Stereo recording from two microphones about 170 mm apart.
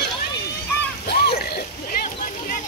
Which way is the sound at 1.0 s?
70° left (ahead or behind).